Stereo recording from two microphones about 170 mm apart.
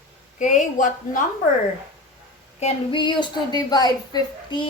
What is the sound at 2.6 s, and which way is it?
A woman's voice, 35° left (ahead or behind).